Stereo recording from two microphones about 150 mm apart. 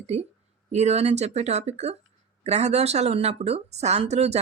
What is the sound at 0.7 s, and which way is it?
A woman's voice, 45° right (ahead or behind).